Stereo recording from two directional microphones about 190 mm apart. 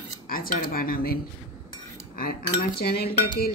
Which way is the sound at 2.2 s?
50° left (ahead or behind).